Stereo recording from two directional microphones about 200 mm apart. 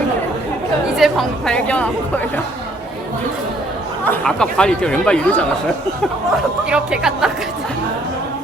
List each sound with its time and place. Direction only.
0.9 s speech: centre (ahead or behind)
4.0 s speech: 5° left (ahead or behind)
6.7 s speech: 5° right (ahead or behind)